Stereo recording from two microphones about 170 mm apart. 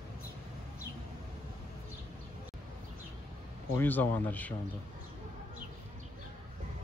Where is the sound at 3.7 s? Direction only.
10° left (ahead or behind).